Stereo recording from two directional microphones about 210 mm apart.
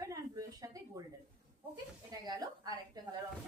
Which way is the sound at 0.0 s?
15° right (ahead or behind).